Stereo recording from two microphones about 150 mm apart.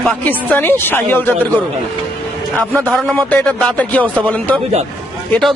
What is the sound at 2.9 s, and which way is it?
A man's voice, 5° left (ahead or behind).